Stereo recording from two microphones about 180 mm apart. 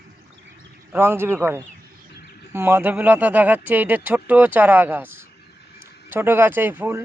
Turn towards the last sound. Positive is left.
turn(degrees=-10)  # may be behind; listen again after turning